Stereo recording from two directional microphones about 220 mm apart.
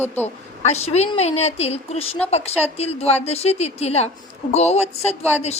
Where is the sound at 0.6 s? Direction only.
30° left (ahead or behind).